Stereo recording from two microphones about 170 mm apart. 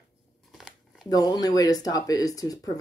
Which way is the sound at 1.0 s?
25° left (ahead or behind).